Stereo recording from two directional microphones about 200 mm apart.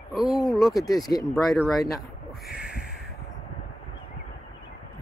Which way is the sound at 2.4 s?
5° right (ahead or behind).